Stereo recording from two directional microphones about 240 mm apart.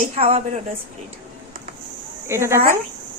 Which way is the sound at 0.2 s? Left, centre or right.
Right.